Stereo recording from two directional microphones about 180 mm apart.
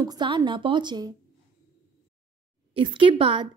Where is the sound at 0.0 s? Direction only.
25° right (ahead or behind).